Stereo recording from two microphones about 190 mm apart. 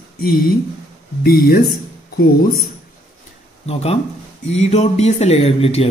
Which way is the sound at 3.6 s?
35° left (ahead or behind).